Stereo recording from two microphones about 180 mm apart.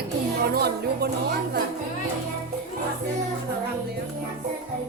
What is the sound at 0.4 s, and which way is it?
Music, 60° right (ahead or behind).